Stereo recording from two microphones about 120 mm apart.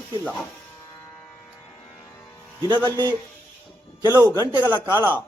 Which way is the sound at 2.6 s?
40° right (ahead or behind).